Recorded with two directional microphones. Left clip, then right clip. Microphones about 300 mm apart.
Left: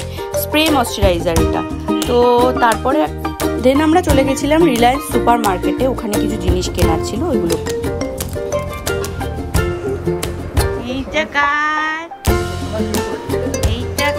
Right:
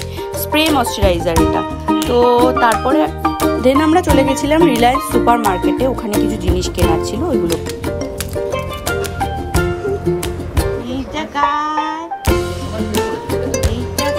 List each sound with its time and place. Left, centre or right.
0.5 s speech: centre
11.1 s music: centre